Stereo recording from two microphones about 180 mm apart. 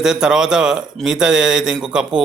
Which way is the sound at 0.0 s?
5° right (ahead or behind).